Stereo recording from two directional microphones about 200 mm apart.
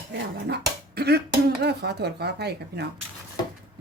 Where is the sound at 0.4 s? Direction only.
55° right (ahead or behind).